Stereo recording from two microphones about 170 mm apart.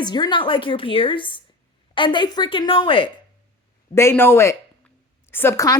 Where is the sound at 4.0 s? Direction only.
15° left (ahead or behind).